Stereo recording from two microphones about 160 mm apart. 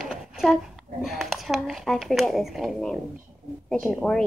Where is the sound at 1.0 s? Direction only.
Centre (ahead or behind).